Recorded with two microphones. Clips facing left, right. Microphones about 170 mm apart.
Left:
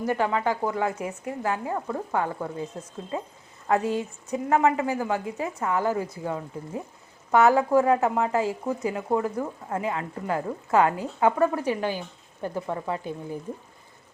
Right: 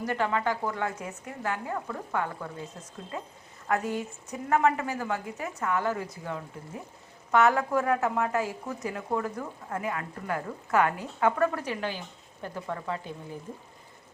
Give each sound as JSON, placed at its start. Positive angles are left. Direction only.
{"t": 0.1, "sound": "a woman's voice", "side_deg": 20}